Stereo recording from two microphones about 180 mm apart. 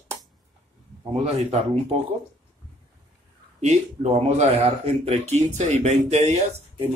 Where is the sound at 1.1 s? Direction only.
35° right (ahead or behind).